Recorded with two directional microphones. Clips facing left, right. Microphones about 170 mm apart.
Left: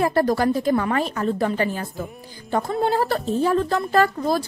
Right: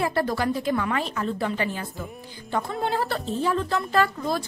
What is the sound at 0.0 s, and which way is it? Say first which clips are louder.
A woman's voice: left 5 dB; 40° left (ahead or behind).